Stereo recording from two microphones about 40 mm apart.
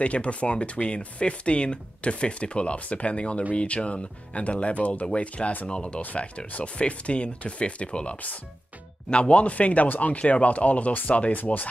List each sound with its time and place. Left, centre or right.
0.0 s speech: left